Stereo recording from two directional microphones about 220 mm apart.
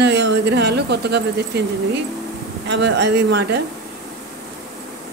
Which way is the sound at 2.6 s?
50° right (ahead or behind).